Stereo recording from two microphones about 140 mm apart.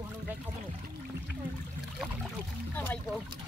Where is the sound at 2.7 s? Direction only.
15° left (ahead or behind).